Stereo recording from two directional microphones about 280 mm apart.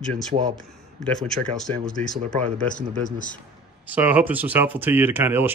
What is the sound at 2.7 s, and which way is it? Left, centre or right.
Speech, left.